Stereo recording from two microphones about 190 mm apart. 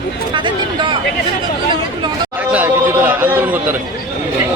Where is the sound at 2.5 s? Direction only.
10° right (ahead or behind).